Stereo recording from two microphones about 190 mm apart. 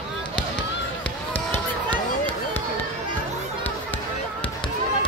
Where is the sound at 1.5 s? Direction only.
10° left (ahead or behind).